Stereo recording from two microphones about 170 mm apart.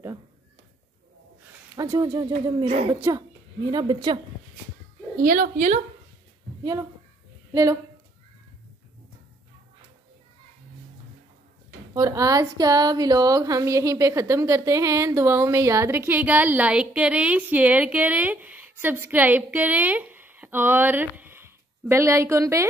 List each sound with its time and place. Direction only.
1.8 s speech: 20° right (ahead or behind)
2.6 s a woman's voice: 40° right (ahead or behind)
2.9 s speech: 20° right (ahead or behind)
5.2 s a woman's voice: 55° right (ahead or behind)
6.6 s speech: 20° right (ahead or behind)
11.9 s a woman's voice: 20° right (ahead or behind)